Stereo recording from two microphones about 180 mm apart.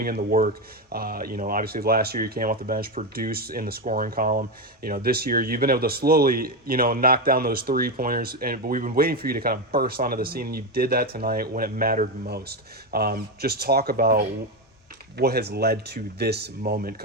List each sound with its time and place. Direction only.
0.0 s speech: 55° right (ahead or behind)